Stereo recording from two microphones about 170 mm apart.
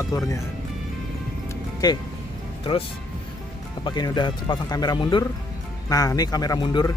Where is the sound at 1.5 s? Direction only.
20° left (ahead or behind).